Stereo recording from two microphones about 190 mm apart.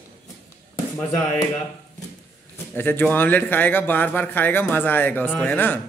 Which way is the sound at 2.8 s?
10° left (ahead or behind).